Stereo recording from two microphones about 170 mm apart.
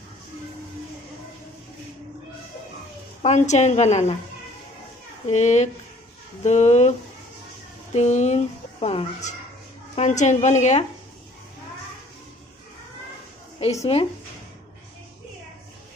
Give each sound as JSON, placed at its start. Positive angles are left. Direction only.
{"t": 3.2, "sound": "a woman's voice", "side_deg": 40}
{"t": 5.3, "sound": "a woman's voice", "side_deg": 40}
{"t": 13.9, "sound": "a woman's voice", "side_deg": 35}